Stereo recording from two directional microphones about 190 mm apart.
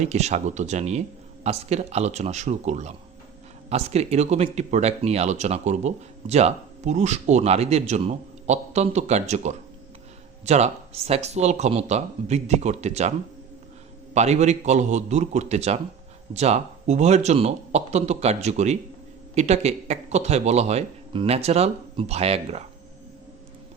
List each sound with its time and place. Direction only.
0.0 s speech: 35° right (ahead or behind)